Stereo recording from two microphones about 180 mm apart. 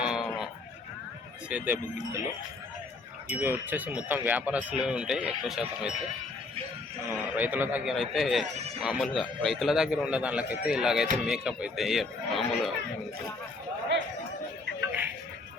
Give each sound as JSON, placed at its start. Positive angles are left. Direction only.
{"t": 0.0, "sound": "sheep", "side_deg": -5}
{"t": 1.5, "sound": "speech", "side_deg": -10}
{"t": 3.3, "sound": "speech", "side_deg": -10}
{"t": 7.3, "sound": "a man's voice", "side_deg": -10}
{"t": 8.5, "sound": "speech", "side_deg": -35}
{"t": 8.8, "sound": "a man's voice", "side_deg": -5}